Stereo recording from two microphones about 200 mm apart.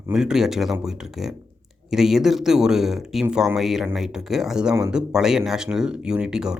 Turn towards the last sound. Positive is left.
turn(degrees=-5)  # may be behind; listen again after turning